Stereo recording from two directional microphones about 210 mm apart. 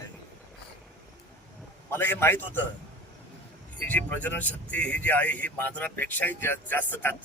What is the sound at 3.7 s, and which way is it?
Speech, 10° left (ahead or behind).